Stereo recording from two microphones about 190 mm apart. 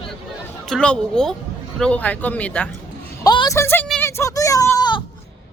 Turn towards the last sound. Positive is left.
turn(degrees=20)  # may be behind; listen again after turning